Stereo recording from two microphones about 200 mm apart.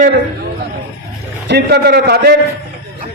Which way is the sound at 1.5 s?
55° right (ahead or behind).